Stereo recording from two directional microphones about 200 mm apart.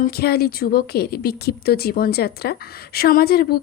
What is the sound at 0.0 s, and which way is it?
Speech, 50° left (ahead or behind).